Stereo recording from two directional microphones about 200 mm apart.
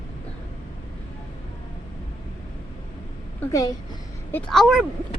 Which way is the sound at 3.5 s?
20° left (ahead or behind).